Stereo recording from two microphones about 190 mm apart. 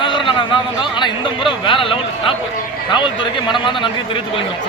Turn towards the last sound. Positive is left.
turn(degrees=25)  # may be behind; listen again after turning